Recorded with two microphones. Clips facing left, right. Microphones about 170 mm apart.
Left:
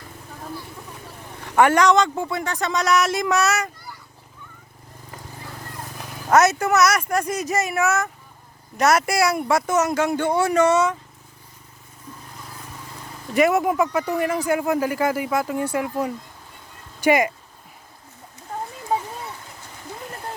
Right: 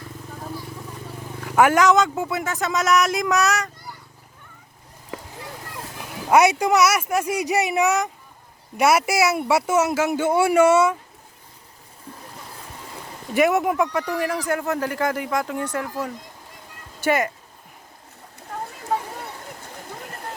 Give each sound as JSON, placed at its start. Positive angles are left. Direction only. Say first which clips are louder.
{"t": 1.5, "sound": "speech", "louder": "even", "side_deg": -5}
{"t": 5.1, "sound": "vehicle", "louder": "right 7 dB", "side_deg": -80}
{"t": 6.2, "sound": "speech", "louder": "right 1 dB", "side_deg": -10}
{"t": 13.3, "sound": "speech", "louder": "left 1 dB", "side_deg": 0}